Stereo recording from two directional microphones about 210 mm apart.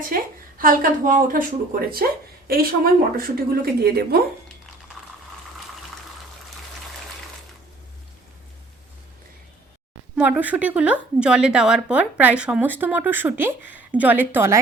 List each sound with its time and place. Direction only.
0.1 s a woman's voice: 45° right (ahead or behind)
10.2 s a woman's voice: 10° right (ahead or behind)